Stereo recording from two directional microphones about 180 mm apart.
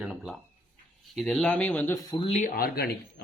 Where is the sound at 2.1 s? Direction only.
35° left (ahead or behind); by 3.2 s 60° left (ahead or behind).